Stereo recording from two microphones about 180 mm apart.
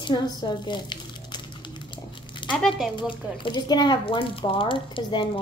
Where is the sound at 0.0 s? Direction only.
25° left (ahead or behind).